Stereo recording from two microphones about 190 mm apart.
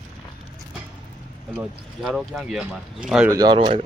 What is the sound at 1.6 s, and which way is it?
Speech, centre (ahead or behind).